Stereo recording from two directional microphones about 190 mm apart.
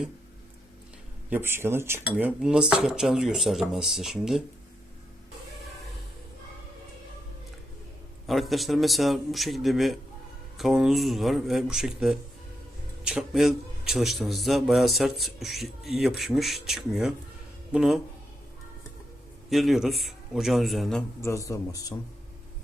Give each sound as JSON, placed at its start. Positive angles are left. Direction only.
{"t": 1.3, "sound": "a man's voice", "side_deg": -10}
{"t": 8.3, "sound": "a man's voice", "side_deg": 0}
{"t": 19.5, "sound": "a man's voice", "side_deg": 0}
{"t": 21.2, "sound": "a man's voice", "side_deg": 15}